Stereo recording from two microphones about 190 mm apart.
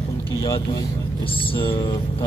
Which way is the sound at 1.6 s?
25° left (ahead or behind).